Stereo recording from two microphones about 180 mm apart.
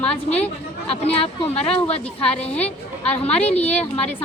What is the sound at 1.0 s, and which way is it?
A woman's voice, 35° left (ahead or behind).